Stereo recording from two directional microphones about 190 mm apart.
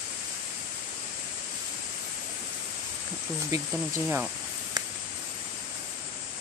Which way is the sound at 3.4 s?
15° right (ahead or behind).